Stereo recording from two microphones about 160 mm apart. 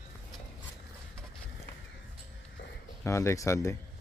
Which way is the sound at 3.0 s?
15° left (ahead or behind).